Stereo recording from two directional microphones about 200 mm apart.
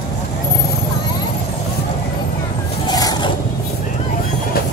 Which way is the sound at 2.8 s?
20° left (ahead or behind).